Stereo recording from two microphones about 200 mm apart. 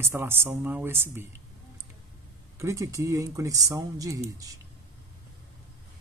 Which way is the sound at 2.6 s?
15° right (ahead or behind).